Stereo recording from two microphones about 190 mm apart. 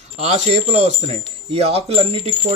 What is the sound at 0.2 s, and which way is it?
Speech, 35° right (ahead or behind).